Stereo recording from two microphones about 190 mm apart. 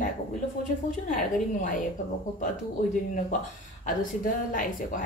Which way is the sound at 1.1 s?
40° left (ahead or behind).